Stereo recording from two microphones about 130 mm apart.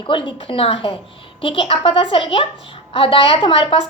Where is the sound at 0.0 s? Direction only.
40° left (ahead or behind).